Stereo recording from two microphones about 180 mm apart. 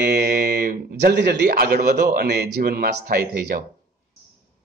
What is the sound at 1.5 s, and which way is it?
Speech, 50° right (ahead or behind).